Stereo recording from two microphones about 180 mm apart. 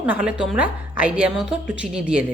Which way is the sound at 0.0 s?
5° right (ahead or behind).